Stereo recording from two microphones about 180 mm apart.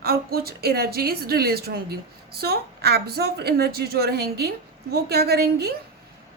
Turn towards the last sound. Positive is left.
turn(degrees=-65)  # may be behind; listen again after turning